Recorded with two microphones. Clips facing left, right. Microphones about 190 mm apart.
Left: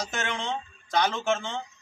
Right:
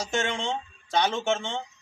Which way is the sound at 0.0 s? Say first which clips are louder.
Right 3 dB; 30° right (ahead or behind).